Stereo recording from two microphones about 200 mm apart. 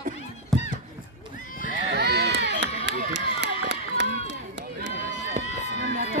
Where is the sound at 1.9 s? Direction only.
55° right (ahead or behind).